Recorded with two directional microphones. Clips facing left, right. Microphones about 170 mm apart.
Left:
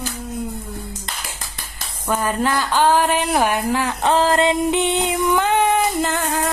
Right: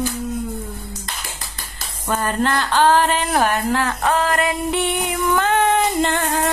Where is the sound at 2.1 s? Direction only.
10° left (ahead or behind).